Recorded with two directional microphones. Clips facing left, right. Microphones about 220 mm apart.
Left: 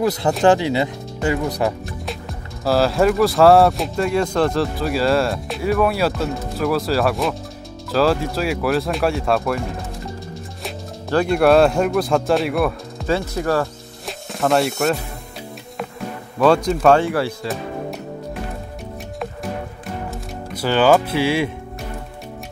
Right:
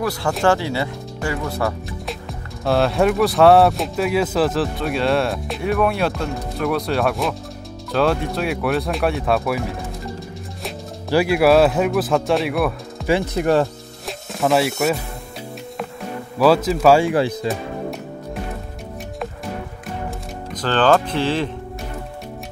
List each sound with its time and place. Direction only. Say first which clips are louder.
0.0 s speech: left 3 dB; 20° left (ahead or behind)
2.0 s speech: even; centre (ahead or behind)
13.0 s speech: right 2 dB; 15° right (ahead or behind)
14.0 s music: even; centre (ahead or behind)
16.3 s speech: even; 5° right (ahead or behind)
20.5 s music: left 2 dB; 10° left (ahead or behind)